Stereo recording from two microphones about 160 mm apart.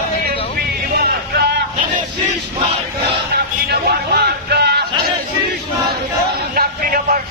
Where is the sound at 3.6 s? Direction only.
90° right.